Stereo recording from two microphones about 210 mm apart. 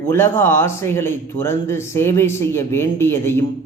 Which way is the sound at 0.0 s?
10° left (ahead or behind).